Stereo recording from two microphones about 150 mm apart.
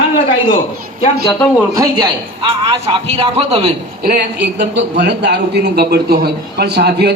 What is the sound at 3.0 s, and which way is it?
Speech, 40° right (ahead or behind).